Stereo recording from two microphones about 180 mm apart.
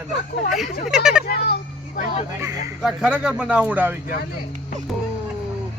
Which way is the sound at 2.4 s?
20° right (ahead or behind).